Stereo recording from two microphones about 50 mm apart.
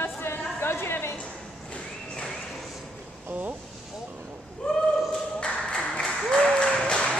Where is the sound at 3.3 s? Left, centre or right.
Right.